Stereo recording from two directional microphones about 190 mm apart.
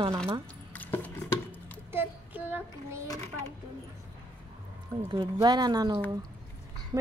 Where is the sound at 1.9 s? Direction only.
10° right (ahead or behind).